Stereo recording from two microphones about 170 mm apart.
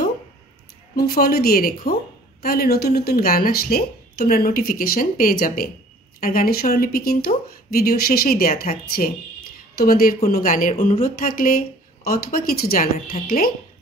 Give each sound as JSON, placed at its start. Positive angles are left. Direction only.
{"t": 0.9, "sound": "speech", "side_deg": 65}